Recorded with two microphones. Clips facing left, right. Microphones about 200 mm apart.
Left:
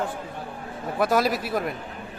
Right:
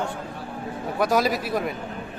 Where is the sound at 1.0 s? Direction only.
Centre (ahead or behind).